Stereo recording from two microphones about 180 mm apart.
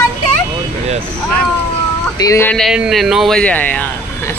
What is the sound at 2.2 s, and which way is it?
Speech, 15° left (ahead or behind).